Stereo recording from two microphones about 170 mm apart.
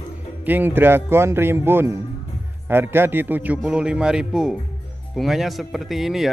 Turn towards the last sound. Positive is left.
turn(degrees=0)  # may be behind; listen again after turning